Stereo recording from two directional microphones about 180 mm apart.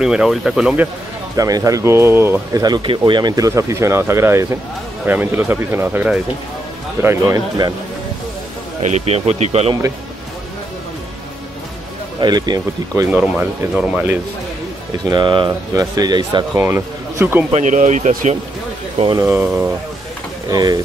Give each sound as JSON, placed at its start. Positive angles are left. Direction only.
{"t": 0.0, "sound": "speech", "side_deg": -5}
{"t": 1.3, "sound": "speech", "side_deg": -20}
{"t": 8.8, "sound": "speech", "side_deg": -35}
{"t": 12.2, "sound": "speech", "side_deg": -25}
{"t": 13.1, "sound": "speech", "side_deg": -10}
{"t": 15.0, "sound": "speech", "side_deg": -25}
{"t": 17.5, "sound": "speech", "side_deg": -40}
{"t": 19.1, "sound": "speech", "side_deg": -10}